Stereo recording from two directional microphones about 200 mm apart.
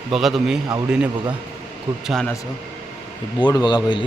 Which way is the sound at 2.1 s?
Centre (ahead or behind).